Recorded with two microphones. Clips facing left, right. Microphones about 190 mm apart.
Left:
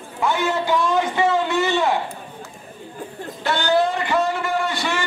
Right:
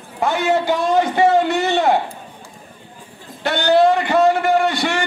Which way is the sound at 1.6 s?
65° right (ahead or behind).